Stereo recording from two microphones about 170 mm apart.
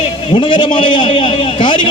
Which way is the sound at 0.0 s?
30° left (ahead or behind).